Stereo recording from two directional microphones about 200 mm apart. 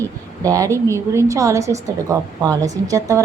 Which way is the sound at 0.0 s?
15° right (ahead or behind).